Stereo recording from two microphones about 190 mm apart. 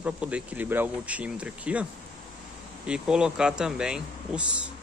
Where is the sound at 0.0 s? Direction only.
5° right (ahead or behind).